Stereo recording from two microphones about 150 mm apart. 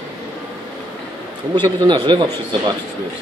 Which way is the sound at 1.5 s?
30° right (ahead or behind).